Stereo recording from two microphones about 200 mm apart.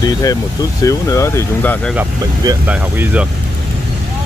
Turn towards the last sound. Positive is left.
turn(degrees=-5)  # may be behind; listen again after turning